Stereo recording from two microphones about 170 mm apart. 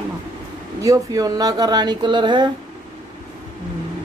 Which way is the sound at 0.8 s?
20° right (ahead or behind).